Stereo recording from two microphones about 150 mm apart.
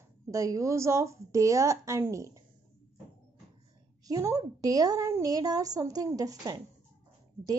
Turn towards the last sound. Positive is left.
turn(degrees=-25)  # may be behind; listen again after turning